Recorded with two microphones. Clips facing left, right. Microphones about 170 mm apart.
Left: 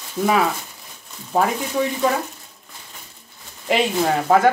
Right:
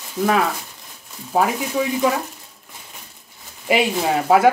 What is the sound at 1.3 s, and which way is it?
Speech, 5° right (ahead or behind).